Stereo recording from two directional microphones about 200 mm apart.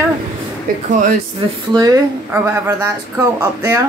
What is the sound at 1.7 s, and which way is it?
Speech, 20° right (ahead or behind).